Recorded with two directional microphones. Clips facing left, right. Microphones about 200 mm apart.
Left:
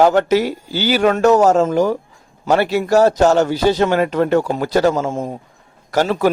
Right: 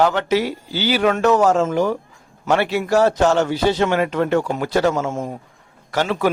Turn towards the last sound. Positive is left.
turn(degrees=40)  # may be behind; listen again after turning